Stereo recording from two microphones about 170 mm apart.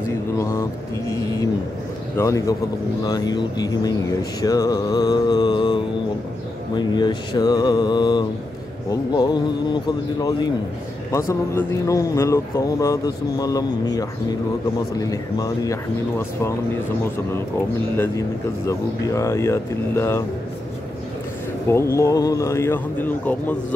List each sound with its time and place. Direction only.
0.4 s speech: 15° left (ahead or behind)
17.9 s speech: 15° left (ahead or behind)
21.6 s speech: 15° left (ahead or behind)